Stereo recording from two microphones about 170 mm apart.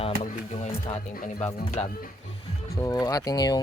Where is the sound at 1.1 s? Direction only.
45° left (ahead or behind).